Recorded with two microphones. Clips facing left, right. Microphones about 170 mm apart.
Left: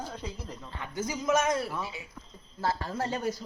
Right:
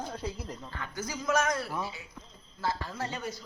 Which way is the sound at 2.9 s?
50° left (ahead or behind).